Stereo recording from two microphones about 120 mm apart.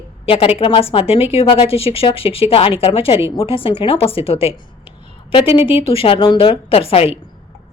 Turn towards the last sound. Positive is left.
turn(degrees=55)  # may be behind; listen again after turning